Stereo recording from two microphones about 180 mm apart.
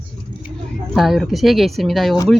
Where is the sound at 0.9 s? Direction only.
Centre (ahead or behind).